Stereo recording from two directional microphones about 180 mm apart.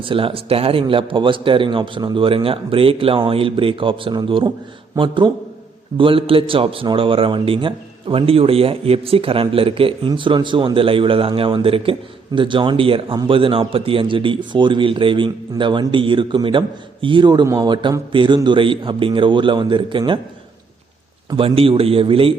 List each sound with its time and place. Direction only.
0.0 s a man's voice: 30° right (ahead or behind)
21.2 s speech: 30° right (ahead or behind)